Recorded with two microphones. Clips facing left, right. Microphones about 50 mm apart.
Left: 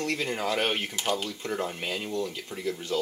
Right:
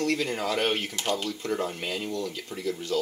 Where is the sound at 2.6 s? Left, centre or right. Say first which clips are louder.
Right 1 dB; left.